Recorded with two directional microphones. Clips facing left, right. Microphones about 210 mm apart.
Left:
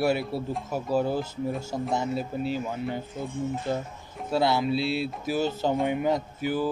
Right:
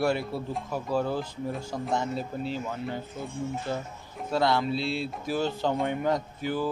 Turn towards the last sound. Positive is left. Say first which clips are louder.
# left 2 dB
turn(degrees=5)  # may be behind; listen again after turning